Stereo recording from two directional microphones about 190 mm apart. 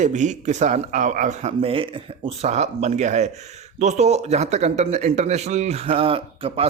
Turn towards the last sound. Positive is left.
turn(degrees=-30)  # may be behind; listen again after turning